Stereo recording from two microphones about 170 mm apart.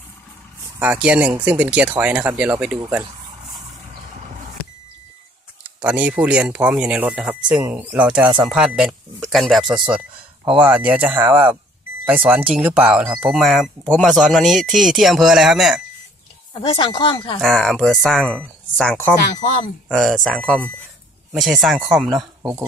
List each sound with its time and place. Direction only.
0.7 s speech: 10° right (ahead or behind)
5.8 s speech: 10° right (ahead or behind)
16.5 s speech: 30° left (ahead or behind)
17.4 s speech: centre (ahead or behind)